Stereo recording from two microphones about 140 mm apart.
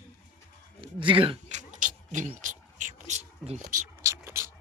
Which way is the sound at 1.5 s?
60° right (ahead or behind).